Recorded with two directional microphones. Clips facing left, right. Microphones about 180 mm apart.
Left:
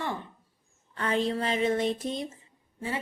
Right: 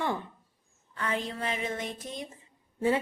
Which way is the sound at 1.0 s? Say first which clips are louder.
Left 5 dB; 35° left (ahead or behind).